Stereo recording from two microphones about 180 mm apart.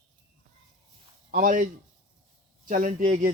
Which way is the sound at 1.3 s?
50° right (ahead or behind).